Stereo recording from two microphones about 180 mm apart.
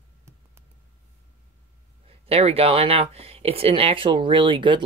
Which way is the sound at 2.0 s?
35° right (ahead or behind).